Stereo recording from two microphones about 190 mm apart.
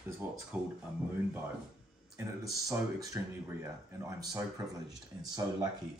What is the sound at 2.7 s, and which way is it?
Speech, 15° right (ahead or behind).